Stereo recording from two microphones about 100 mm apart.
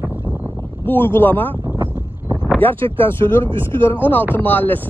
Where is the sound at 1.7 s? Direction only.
20° right (ahead or behind).